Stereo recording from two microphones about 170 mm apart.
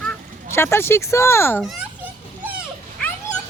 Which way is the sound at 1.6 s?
10° right (ahead or behind).